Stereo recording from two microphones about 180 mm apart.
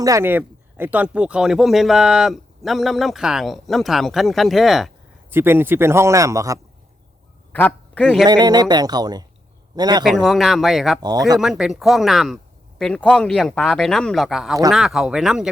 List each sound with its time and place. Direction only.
0.0 s speech: 15° right (ahead or behind); by 4.9 s centre (ahead or behind)
5.3 s speech: 10° right (ahead or behind)
7.5 s a man's voice: 5° left (ahead or behind)
8.3 s speech: 20° right (ahead or behind)
10.0 s speech: centre (ahead or behind)
11.0 s speech: 20° right (ahead or behind)
11.3 s speech: centre (ahead or behind)